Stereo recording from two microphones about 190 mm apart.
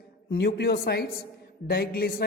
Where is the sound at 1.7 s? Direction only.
55° left (ahead or behind).